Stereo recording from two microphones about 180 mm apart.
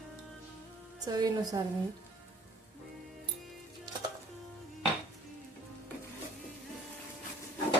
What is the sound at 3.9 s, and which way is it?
Music, 20° right (ahead or behind).